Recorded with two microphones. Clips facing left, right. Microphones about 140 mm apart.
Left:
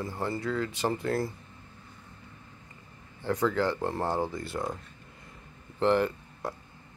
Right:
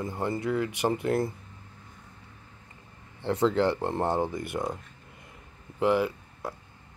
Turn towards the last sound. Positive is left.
turn(degrees=-10)  # may be behind; listen again after turning